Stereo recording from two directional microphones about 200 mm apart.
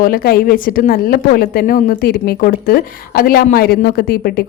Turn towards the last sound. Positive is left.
turn(degrees=50)  # may be behind; listen again after turning